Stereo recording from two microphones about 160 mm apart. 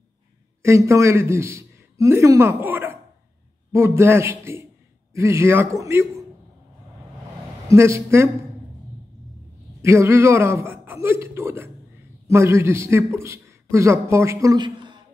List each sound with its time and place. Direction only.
0.6 s a man's voice: 20° right (ahead or behind)
7.6 s a man's voice: 15° right (ahead or behind)
9.8 s a man's voice: 15° right (ahead or behind)